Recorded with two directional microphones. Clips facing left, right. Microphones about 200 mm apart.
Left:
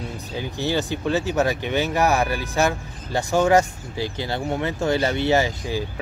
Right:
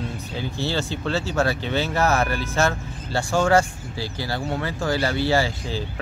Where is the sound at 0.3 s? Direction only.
15° left (ahead or behind).